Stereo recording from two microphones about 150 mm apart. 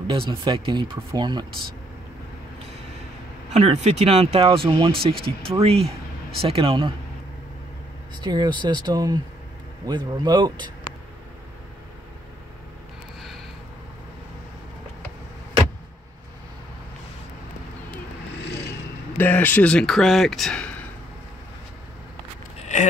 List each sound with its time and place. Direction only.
0.0 s speech: 35° right (ahead or behind)
3.4 s speech: 50° right (ahead or behind)
8.2 s speech: 30° right (ahead or behind)
19.1 s speech: 10° left (ahead or behind)
22.6 s vehicle: 50° left (ahead or behind)